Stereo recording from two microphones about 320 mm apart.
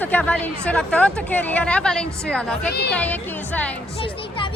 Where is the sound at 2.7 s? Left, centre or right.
Left.